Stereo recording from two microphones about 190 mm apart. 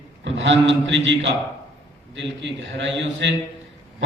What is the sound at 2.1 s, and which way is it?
A man's voice, 70° right (ahead or behind).